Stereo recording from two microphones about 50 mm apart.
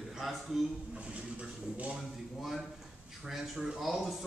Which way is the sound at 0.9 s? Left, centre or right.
Right.